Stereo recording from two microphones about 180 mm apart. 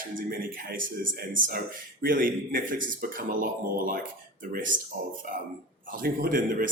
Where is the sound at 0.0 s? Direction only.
50° right (ahead or behind).